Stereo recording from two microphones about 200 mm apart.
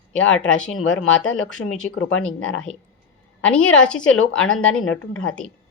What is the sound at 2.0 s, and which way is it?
Speech, 80° left.